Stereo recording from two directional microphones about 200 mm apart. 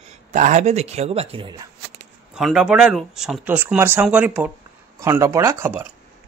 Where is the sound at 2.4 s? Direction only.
5° right (ahead or behind).